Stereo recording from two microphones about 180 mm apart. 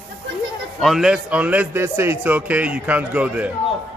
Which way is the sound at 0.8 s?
Centre (ahead or behind).